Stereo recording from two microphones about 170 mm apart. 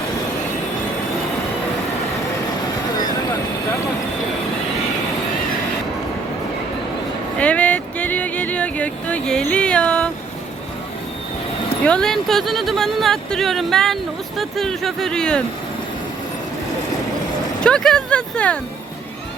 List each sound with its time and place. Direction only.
7.3 s music: 5° left (ahead or behind)
11.9 s speech: 5° left (ahead or behind)
17.6 s speech: 5° left (ahead or behind)